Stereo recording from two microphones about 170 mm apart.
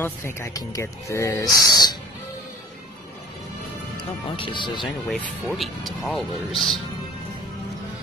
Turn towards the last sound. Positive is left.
turn(degrees=0)  # may be behind; listen again after turning